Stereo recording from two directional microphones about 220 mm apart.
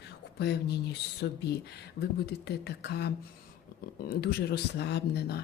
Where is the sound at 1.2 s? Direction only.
50° left (ahead or behind).